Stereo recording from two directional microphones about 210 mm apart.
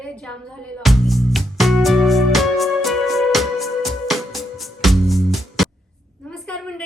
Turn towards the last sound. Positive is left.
turn(degrees=5)  # may be behind; listen again after turning